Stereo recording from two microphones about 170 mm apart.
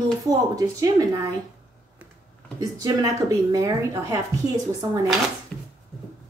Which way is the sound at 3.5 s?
20° right (ahead or behind).